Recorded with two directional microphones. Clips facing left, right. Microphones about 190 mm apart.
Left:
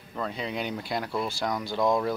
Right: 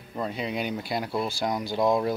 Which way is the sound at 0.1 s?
15° right (ahead or behind).